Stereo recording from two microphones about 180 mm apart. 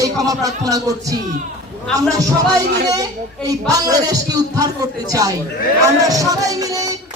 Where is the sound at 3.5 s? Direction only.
20° right (ahead or behind).